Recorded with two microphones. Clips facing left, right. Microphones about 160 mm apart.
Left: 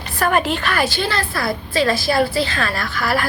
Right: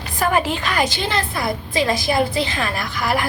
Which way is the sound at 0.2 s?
15° right (ahead or behind).